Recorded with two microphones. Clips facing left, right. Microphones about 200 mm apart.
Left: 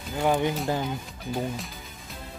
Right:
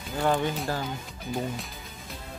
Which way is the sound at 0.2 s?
15° left (ahead or behind).